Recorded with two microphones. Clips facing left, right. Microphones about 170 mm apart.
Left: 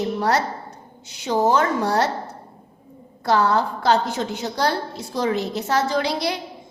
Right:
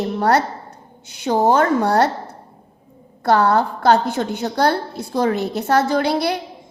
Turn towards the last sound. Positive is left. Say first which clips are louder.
# right 4 dB
turn(degrees=-55)  # may be behind; listen again after turning